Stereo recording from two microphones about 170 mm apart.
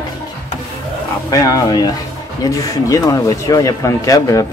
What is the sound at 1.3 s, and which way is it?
Speech, 20° left (ahead or behind).